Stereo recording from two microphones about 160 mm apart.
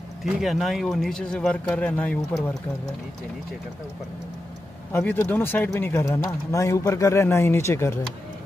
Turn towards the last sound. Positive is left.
turn(degrees=15)  # may be behind; listen again after turning